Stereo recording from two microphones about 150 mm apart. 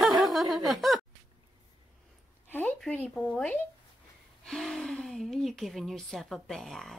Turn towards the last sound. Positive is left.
turn(degrees=0)  # may be behind; listen again after turning